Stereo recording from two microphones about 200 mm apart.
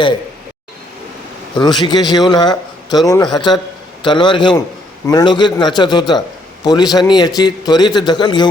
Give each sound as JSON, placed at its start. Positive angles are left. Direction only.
{"t": 1.5, "sound": "a man's voice", "side_deg": 20}